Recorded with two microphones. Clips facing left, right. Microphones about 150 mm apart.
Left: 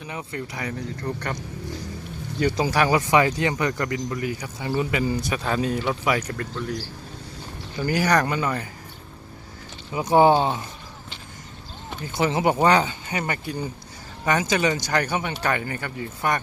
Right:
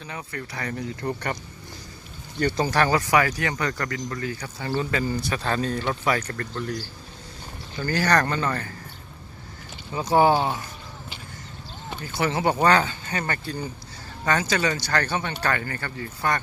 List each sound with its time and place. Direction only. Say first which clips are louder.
0.0 s speech: left 3 dB; 20° left (ahead or behind)
0.7 s speech: right 4 dB; centre (ahead or behind)
3.0 s speech: left 2 dB; 20° left (ahead or behind)
7.8 s speech: left 1 dB; 15° left (ahead or behind)
9.9 s speech: left 2 dB; 20° left (ahead or behind)
12.1 s speech: left 2 dB; 20° left (ahead or behind)